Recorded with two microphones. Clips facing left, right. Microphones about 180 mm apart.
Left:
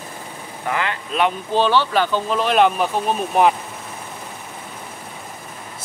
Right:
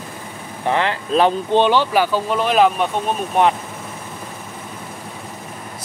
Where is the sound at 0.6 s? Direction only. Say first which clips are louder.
Right 5 dB; 30° right (ahead or behind).